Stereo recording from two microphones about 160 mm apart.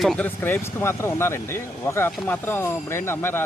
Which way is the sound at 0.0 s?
Centre (ahead or behind).